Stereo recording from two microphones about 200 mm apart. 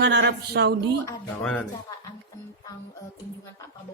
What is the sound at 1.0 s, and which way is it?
Mantra, 10° left (ahead or behind).